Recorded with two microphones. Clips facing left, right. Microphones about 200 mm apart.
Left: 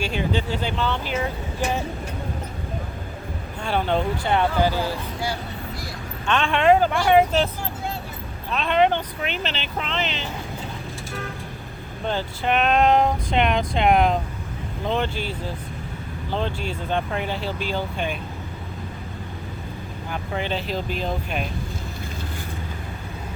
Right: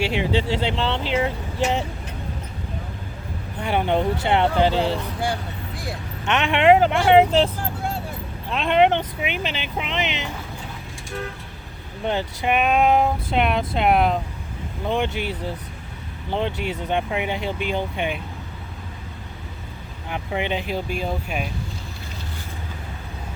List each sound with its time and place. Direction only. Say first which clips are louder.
0.0 s speech: right 3 dB; 75° right (ahead or behind)
0.7 s speech: right 2 dB; 25° right (ahead or behind)
3.6 s speech: right 2 dB; 15° right (ahead or behind)
6.2 s speech: right 2 dB; 20° right (ahead or behind)
9.2 s speech: right 1 dB; 10° right (ahead or behind)
12.0 s speech: right 1 dB; 20° right (ahead or behind)
14.8 s speech: right 1 dB; 15° right (ahead or behind)
16.3 s speech: right 2 dB; 20° right (ahead or behind)
20.1 s speech: right 2 dB; 20° right (ahead or behind)